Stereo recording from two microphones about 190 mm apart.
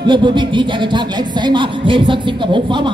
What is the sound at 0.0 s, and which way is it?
Speech, 25° right (ahead or behind).